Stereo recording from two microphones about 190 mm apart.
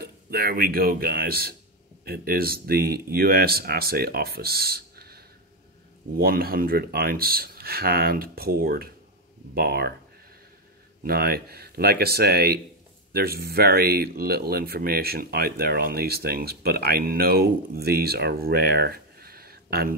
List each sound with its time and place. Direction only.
0.0 s speech: 50° right (ahead or behind)
11.0 s speech: 55° right (ahead or behind)